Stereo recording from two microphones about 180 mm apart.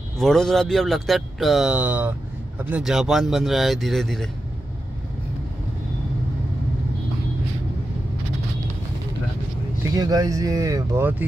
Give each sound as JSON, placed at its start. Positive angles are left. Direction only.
{"t": 0.2, "sound": "speech", "side_deg": 0}
{"t": 9.9, "sound": "speech", "side_deg": -20}